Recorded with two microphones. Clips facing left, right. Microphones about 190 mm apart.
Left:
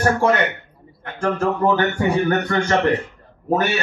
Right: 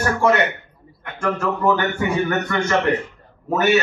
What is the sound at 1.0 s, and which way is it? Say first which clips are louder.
A man's voice: left 2 dB; 35° left (ahead or behind).